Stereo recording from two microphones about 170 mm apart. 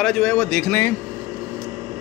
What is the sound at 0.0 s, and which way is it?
Speech, 5° left (ahead or behind).